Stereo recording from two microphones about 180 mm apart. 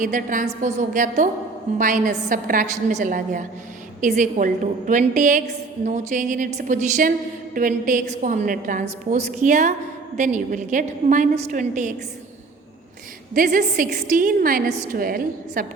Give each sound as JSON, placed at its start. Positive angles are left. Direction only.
{"t": 0.0, "sound": "a woman's voice", "side_deg": -45}
{"t": 13.3, "sound": "a woman's voice", "side_deg": -45}